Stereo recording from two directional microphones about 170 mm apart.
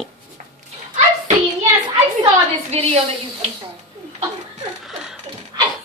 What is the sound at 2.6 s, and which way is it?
Speech, 40° right (ahead or behind).